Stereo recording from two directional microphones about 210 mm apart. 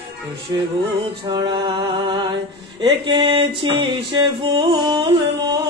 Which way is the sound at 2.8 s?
20° right (ahead or behind).